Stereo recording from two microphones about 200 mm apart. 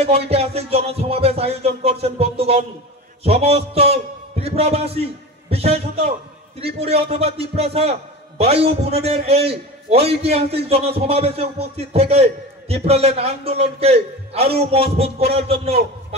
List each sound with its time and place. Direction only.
0.0 s a man's voice: 30° right (ahead or behind)